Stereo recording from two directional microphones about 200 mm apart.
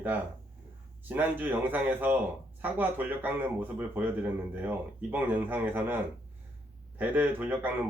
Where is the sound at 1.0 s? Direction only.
10° right (ahead or behind).